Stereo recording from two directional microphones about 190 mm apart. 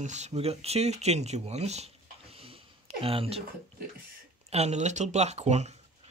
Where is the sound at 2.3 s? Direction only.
30° right (ahead or behind).